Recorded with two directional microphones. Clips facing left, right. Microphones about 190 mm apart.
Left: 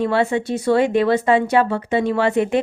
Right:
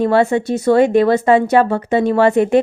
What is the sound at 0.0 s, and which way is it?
Speech, 45° right (ahead or behind).